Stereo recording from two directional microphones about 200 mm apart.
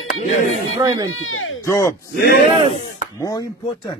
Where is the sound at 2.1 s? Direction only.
55° left (ahead or behind).